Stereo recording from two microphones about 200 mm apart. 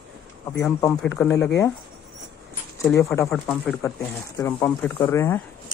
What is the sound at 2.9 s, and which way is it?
Speech, 15° left (ahead or behind).